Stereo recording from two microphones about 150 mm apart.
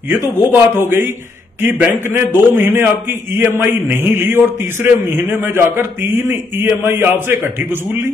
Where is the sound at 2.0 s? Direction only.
15° right (ahead or behind).